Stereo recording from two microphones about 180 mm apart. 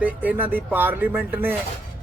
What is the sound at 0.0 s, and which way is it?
Speech, 10° right (ahead or behind).